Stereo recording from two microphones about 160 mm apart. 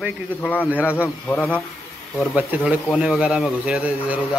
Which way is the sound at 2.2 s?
5° right (ahead or behind).